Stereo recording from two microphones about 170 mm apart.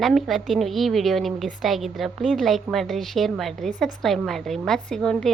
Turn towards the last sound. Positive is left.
turn(degrees=5)  # may be behind; listen again after turning